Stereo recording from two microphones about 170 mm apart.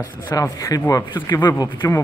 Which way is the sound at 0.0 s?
20° left (ahead or behind).